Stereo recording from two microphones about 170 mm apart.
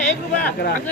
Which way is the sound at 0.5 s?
70° left (ahead or behind).